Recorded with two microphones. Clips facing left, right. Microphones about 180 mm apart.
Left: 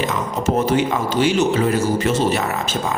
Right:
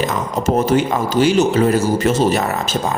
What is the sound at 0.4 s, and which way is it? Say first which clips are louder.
Speech: right 2 dB; 40° right (ahead or behind).